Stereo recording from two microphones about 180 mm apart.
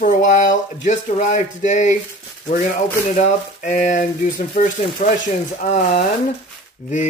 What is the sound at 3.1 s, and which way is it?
Speech, 40° left (ahead or behind).